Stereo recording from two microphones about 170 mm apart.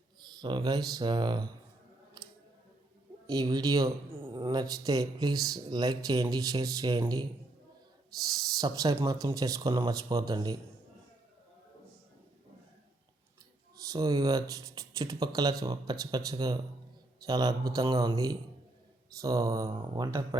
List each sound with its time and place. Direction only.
0.2 s speech: 25° right (ahead or behind)
3.2 s speech: 20° right (ahead or behind)
8.6 s speech: 20° right (ahead or behind)
13.9 s a man's voice: 20° right (ahead or behind)